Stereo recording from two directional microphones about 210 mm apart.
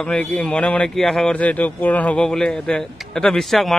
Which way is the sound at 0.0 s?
5° left (ahead or behind).